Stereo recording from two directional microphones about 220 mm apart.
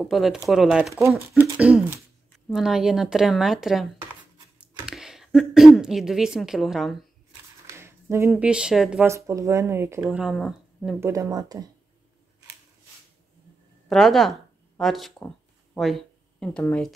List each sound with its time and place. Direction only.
0.0 s a woman's voice: centre (ahead or behind)
7.7 s a sound: 10° right (ahead or behind)
8.3 s speech: 5° right (ahead or behind)
9.0 s speech: 15° right (ahead or behind)
11.0 s speech: 15° right (ahead or behind)
13.8 s speech: centre (ahead or behind)